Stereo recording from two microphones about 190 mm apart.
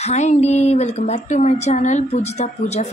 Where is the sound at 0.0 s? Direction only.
40° left (ahead or behind).